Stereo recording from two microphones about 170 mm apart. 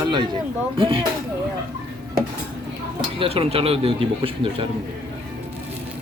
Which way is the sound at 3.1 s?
35° right (ahead or behind).